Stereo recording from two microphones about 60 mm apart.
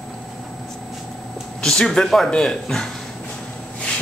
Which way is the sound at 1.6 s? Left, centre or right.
Centre.